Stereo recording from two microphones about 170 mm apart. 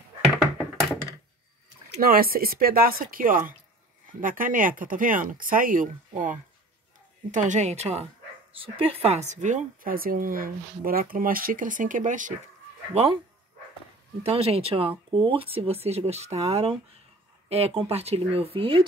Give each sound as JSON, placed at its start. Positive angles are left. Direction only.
{"t": 2.0, "sound": "a woman's voice", "side_deg": -60}
{"t": 12.9, "sound": "speech", "side_deg": -35}
{"t": 14.2, "sound": "speech", "side_deg": -35}